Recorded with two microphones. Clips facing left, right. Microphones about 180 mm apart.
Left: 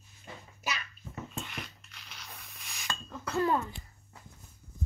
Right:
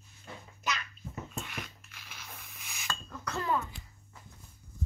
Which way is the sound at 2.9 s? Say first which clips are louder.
Left 2 dB; 20° left (ahead or behind).